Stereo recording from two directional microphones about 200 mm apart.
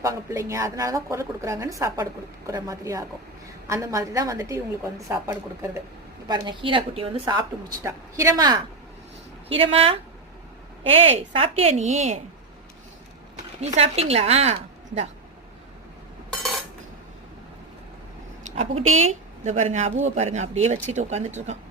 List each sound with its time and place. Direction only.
0.0 s a woman's voice: 15° right (ahead or behind)
9.5 s a woman's voice: 30° right (ahead or behind)
13.6 s speech: 30° right (ahead or behind)
18.4 s a sound: 35° right (ahead or behind)
19.0 s speech: 35° right (ahead or behind)